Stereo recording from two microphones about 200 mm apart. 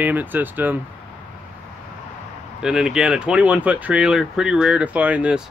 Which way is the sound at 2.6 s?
5° right (ahead or behind).